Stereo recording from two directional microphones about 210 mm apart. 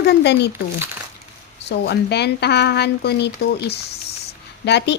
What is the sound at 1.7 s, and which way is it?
A woman's voice, 50° left (ahead or behind).